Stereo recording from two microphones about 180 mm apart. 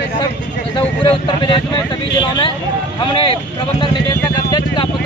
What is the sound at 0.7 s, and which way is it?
Speech, 25° left (ahead or behind).